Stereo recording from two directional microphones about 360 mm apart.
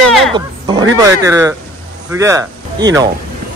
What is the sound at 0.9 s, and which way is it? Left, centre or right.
Speech, centre.